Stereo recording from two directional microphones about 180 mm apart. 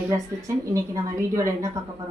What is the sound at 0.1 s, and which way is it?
Speech, 15° right (ahead or behind).